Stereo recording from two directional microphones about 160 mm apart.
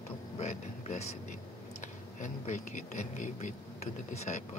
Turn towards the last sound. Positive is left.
turn(degrees=45)  # may be behind; listen again after turning